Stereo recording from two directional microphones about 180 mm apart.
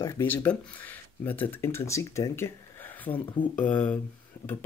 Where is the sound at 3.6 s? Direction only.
10° left (ahead or behind).